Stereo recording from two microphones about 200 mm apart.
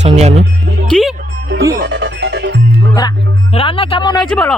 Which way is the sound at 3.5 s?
25° left (ahead or behind).